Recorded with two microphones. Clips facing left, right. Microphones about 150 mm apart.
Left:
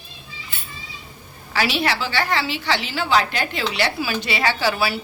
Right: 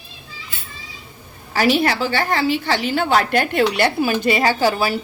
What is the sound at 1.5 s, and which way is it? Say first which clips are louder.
A woman's voice: right 5 dB; 45° right (ahead or behind).